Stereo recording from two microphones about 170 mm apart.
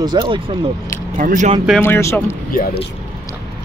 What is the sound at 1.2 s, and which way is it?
Speech, 50° right (ahead or behind).